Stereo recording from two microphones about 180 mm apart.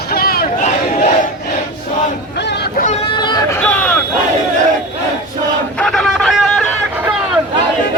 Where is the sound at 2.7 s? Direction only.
40° left (ahead or behind); by 3.6 s 25° left (ahead or behind).